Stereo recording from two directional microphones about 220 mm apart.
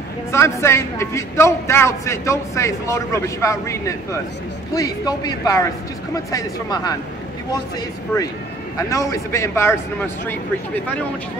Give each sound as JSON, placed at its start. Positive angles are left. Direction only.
{"t": 0.3, "sound": "a man's voice", "side_deg": 10}
{"t": 8.8, "sound": "a man's voice", "side_deg": 15}